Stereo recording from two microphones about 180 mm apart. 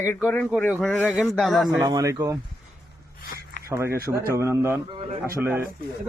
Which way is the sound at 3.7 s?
15° right (ahead or behind).